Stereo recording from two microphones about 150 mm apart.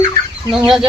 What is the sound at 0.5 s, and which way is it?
Speech, 5° right (ahead or behind).